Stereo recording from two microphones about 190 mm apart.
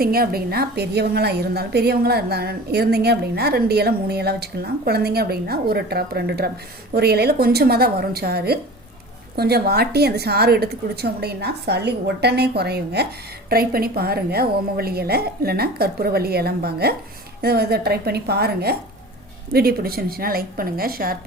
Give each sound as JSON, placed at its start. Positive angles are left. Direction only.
{"t": 0.0, "sound": "a woman's voice", "side_deg": -55}